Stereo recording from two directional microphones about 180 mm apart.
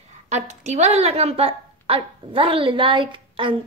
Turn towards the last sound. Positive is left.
turn(degrees=-30)  # may be behind; listen again after turning